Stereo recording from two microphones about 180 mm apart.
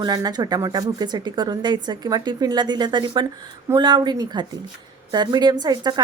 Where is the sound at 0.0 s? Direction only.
20° right (ahead or behind).